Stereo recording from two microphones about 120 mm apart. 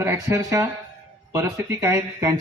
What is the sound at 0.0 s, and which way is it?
A man's voice, 20° right (ahead or behind).